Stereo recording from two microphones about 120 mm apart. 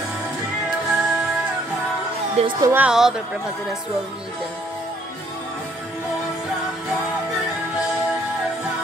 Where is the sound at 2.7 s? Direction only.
5° right (ahead or behind).